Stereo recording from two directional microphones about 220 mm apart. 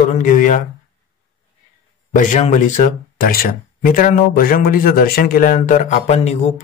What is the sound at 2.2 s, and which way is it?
A man's voice, 35° left (ahead or behind).